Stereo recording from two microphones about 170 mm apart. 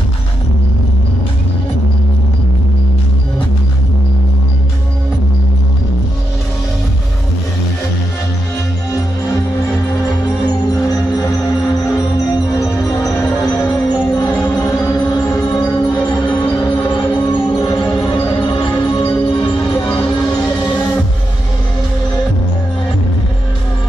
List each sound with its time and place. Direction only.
12.5 s music: 20° left (ahead or behind)